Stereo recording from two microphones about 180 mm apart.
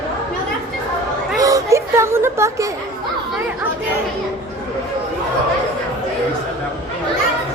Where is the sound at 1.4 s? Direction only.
20° right (ahead or behind).